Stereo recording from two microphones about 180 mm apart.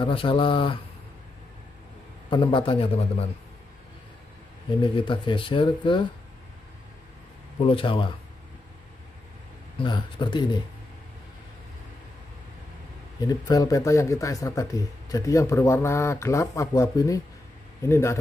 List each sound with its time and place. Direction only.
0.0 s speech: 30° left (ahead or behind)
2.3 s speech: 25° left (ahead or behind)
4.8 s speech: 25° left (ahead or behind)
7.6 s speech: 30° left (ahead or behind)
9.8 s speech: 25° left (ahead or behind)
13.2 s speech: 20° left (ahead or behind)